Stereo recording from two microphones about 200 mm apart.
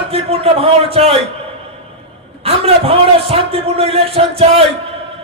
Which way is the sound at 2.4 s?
30° right (ahead or behind).